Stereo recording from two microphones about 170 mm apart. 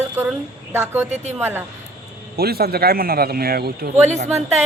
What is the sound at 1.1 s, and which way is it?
Speech, 40° right (ahead or behind).